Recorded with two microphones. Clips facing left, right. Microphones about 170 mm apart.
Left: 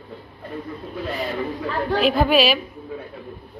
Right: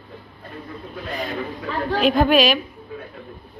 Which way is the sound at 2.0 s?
Centre (ahead or behind).